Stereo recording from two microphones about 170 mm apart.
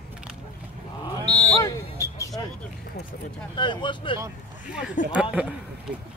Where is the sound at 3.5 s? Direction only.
25° left (ahead or behind).